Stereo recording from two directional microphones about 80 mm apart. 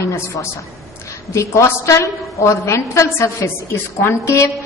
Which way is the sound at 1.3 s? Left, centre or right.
Left.